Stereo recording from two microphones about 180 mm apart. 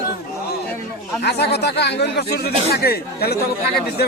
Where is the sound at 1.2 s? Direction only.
65° left (ahead or behind).